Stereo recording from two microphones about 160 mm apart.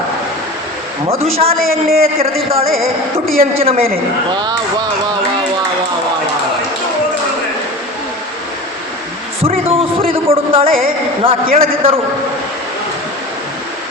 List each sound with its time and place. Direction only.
1.2 s speech: 40° right (ahead or behind)
1.9 s a man's voice: 70° right (ahead or behind)
2.2 s speech: 40° right (ahead or behind)
4.3 s a sound: 30° right (ahead or behind)
9.4 s music: 35° right (ahead or behind)
10.8 s speech: 35° right (ahead or behind)